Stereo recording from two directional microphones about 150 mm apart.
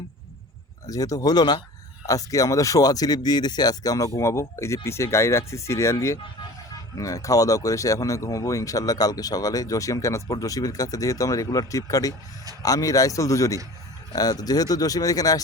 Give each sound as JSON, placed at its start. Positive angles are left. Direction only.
{"t": 0.9, "sound": "speech", "side_deg": 25}